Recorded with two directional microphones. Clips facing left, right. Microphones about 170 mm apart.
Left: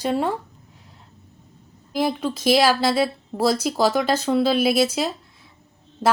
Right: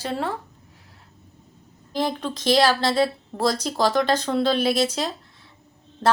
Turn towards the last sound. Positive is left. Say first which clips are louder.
# even
turn(degrees=10)  # may be behind; listen again after turning